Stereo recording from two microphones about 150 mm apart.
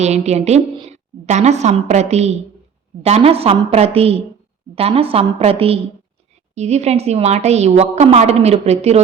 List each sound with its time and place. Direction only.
0.0 s a woman's voice: 45° right (ahead or behind)